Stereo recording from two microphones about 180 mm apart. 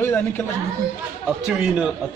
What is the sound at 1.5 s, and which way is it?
Speech, 5° right (ahead or behind).